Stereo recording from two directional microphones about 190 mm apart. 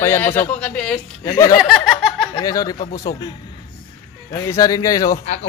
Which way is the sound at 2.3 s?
20° left (ahead or behind).